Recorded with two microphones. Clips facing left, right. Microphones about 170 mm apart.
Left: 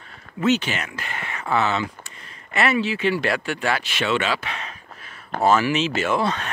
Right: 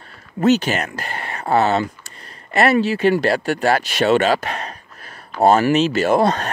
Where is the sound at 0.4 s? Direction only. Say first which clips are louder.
Right 5 dB; 40° right (ahead or behind).